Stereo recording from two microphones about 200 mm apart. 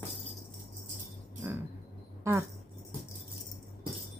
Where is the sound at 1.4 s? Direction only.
15° right (ahead or behind).